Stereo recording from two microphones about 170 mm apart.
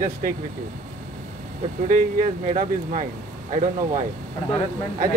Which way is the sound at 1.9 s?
55° right (ahead or behind).